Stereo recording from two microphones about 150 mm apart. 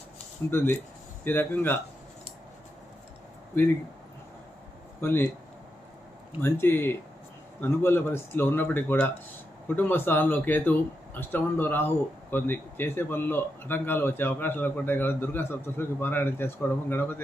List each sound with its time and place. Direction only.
0.5 s a man's voice: 15° left (ahead or behind)
4.9 s speech: 15° left (ahead or behind)
6.4 s a man's voice: 15° left (ahead or behind)